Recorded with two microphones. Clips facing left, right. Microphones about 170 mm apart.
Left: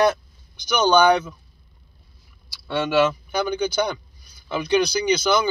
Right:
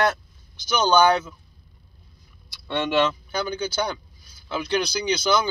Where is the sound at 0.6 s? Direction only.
10° left (ahead or behind).